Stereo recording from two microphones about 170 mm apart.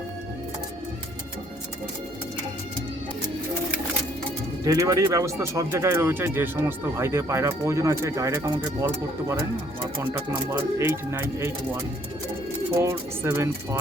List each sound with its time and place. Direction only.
4.6 s speech: 20° right (ahead or behind)
12.7 s speech: 15° right (ahead or behind)